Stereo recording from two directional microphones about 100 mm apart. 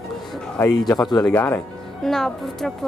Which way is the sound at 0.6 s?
20° left (ahead or behind).